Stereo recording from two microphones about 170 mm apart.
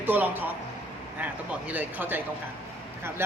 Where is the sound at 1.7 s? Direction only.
10° right (ahead or behind).